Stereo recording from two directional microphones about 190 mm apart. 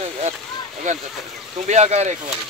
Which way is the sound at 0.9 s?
40° right (ahead or behind).